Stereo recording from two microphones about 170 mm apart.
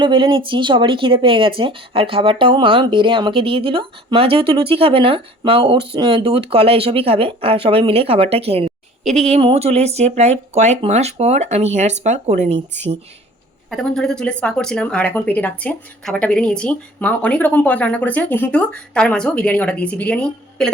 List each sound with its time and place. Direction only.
0.0 s speech: 30° right (ahead or behind)
13.7 s speech: centre (ahead or behind)